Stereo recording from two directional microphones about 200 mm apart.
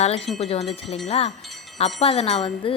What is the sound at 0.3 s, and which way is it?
Speech, 30° left (ahead or behind).